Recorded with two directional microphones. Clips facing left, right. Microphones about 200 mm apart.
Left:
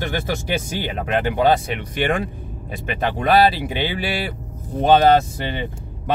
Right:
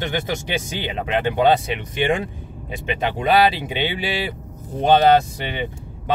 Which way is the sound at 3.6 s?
20° right (ahead or behind).